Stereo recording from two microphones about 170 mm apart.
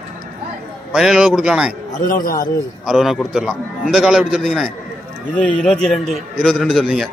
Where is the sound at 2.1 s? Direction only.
55° left (ahead or behind).